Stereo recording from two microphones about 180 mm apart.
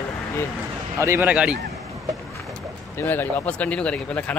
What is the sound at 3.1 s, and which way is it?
Speech, 10° left (ahead or behind).